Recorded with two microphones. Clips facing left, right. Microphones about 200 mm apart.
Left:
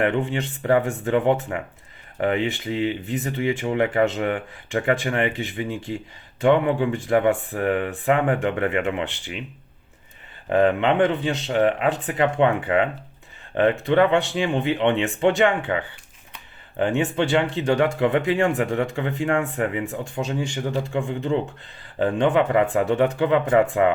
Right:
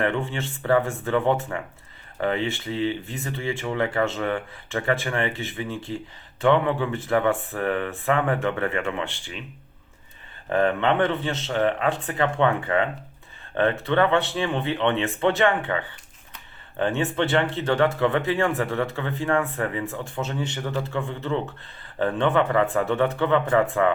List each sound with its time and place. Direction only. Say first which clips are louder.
0.0 s speech: left 3 dB; 15° left (ahead or behind)
10.5 s speech: left 3 dB; 15° left (ahead or behind)